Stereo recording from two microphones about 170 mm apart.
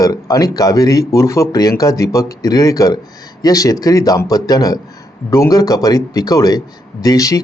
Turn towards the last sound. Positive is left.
turn(degrees=20)  # may be behind; listen again after turning